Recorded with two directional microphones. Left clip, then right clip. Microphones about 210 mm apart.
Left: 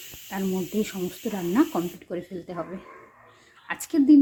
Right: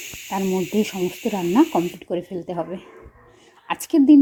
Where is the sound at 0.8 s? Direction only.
20° right (ahead or behind).